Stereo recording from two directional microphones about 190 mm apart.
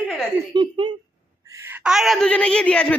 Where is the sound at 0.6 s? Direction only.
25° right (ahead or behind).